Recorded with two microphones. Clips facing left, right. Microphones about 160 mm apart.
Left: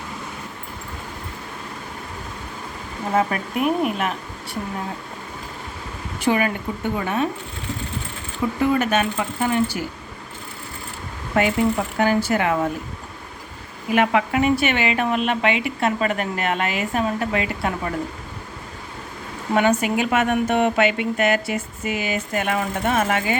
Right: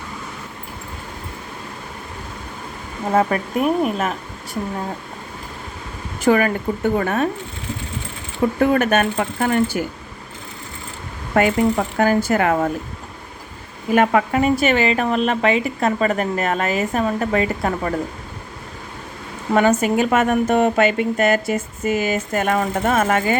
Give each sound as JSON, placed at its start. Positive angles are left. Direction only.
{"t": 3.2, "sound": "speech", "side_deg": -40}
{"t": 6.2, "sound": "speech", "side_deg": -45}
{"t": 8.6, "sound": "speech", "side_deg": -50}
{"t": 11.3, "sound": "speech", "side_deg": -45}
{"t": 13.9, "sound": "speech", "side_deg": -40}
{"t": 19.5, "sound": "speech", "side_deg": -40}